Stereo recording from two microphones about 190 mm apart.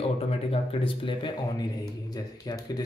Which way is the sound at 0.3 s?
30° left (ahead or behind).